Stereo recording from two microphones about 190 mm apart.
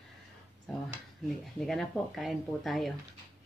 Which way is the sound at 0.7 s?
Centre (ahead or behind).